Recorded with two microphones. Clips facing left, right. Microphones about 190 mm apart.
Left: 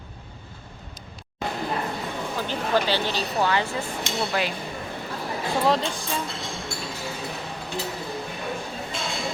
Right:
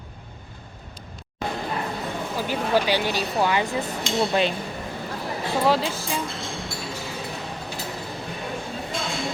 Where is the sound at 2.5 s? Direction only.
10° right (ahead or behind).